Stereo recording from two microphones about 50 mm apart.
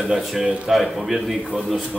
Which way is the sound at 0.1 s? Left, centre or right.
Centre.